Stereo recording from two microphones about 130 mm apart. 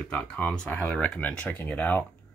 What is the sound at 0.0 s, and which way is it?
Speech, 10° left (ahead or behind).